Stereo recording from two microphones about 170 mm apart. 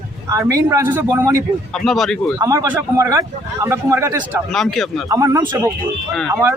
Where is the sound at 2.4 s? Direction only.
20° right (ahead or behind).